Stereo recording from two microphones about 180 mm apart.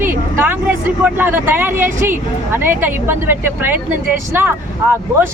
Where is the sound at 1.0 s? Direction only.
10° right (ahead or behind).